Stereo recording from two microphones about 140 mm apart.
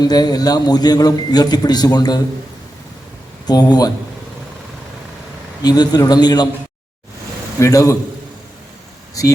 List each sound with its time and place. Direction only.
0.0 s a man's voice: 30° left (ahead or behind)
3.4 s a man's voice: 30° left (ahead or behind)
5.6 s a man's voice: 30° left (ahead or behind)
7.6 s a man's voice: 25° left (ahead or behind)